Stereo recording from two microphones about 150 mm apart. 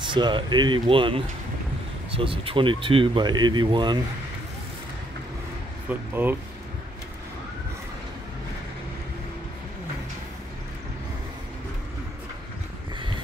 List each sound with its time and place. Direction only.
0.1 s speech: 30° right (ahead or behind)
5.9 s speech: 10° right (ahead or behind)